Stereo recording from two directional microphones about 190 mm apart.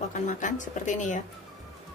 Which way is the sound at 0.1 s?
40° left (ahead or behind).